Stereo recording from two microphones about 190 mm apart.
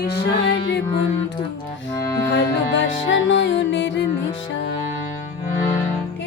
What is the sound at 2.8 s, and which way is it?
Music, 80° left.